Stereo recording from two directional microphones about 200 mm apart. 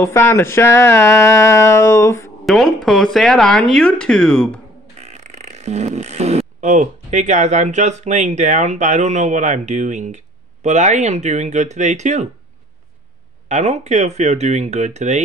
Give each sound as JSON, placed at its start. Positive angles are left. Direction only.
{"t": 0.0, "sound": "a sound", "side_deg": 15}
{"t": 2.4, "sound": "speech", "side_deg": 0}
{"t": 5.0, "sound": "speech", "side_deg": -35}
{"t": 13.5, "sound": "speech", "side_deg": -35}